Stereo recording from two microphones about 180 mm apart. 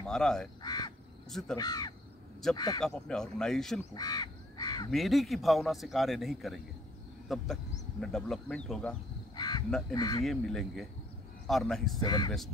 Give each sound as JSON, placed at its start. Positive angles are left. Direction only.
{"t": 0.0, "sound": "speech", "side_deg": 5}
{"t": 0.6, "sound": "crow", "side_deg": 20}
{"t": 1.6, "sound": "speech", "side_deg": 20}
{"t": 2.8, "sound": "a man's voice", "side_deg": 5}
{"t": 3.9, "sound": "crow", "side_deg": 25}
{"t": 4.9, "sound": "a man's voice", "side_deg": 0}
{"t": 9.3, "sound": "crow", "side_deg": 25}
{"t": 9.7, "sound": "a man's voice", "side_deg": 5}
{"t": 9.9, "sound": "speech", "side_deg": 20}
{"t": 10.2, "sound": "a man's voice", "side_deg": 0}
{"t": 12.0, "sound": "speech", "side_deg": 20}
{"t": 12.3, "sound": "a man's voice", "side_deg": 0}